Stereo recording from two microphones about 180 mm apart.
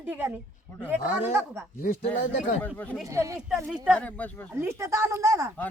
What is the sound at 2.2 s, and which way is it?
Speech, 45° left (ahead or behind).